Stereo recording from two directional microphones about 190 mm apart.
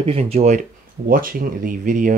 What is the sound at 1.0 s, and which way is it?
Speech, 50° right (ahead or behind).